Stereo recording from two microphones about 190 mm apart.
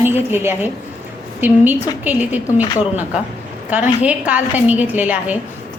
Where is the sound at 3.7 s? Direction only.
5° right (ahead or behind).